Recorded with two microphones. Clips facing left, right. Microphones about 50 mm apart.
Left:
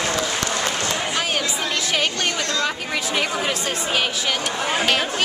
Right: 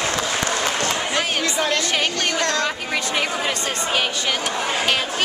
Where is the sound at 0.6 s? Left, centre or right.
Right.